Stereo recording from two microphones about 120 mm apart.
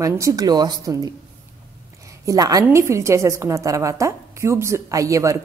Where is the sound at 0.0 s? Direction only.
25° right (ahead or behind).